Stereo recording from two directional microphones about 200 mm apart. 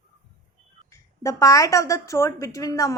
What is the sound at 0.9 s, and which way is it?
A woman's voice, 15° left (ahead or behind).